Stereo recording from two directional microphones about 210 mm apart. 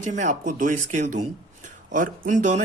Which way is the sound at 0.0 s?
35° right (ahead or behind).